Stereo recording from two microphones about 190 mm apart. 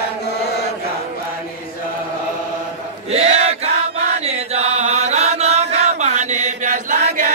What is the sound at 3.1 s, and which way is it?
Chant, 35° right (ahead or behind).